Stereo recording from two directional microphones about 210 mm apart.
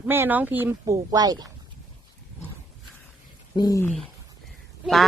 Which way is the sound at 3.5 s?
15° left (ahead or behind).